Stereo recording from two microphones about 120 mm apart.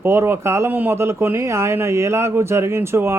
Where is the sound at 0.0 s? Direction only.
20° right (ahead or behind).